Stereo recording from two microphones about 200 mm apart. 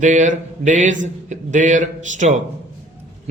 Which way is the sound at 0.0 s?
40° right (ahead or behind).